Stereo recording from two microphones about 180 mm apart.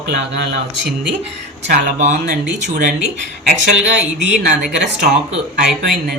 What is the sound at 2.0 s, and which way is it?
Speech, 40° right (ahead or behind).